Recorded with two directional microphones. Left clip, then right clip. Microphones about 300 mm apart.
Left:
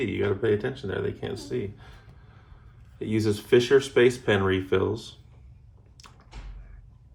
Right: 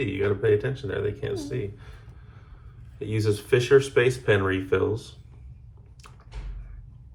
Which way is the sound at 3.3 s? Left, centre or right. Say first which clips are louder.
Right 1 dB; left.